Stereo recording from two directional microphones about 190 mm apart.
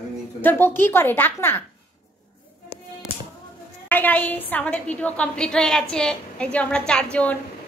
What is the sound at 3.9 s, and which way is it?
A woman's voice, 10° left (ahead or behind).